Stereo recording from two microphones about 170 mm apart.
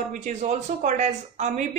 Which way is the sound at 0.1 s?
45° right (ahead or behind).